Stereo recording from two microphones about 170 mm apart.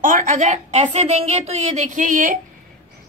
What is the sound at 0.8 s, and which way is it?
A woman's voice, 40° right (ahead or behind).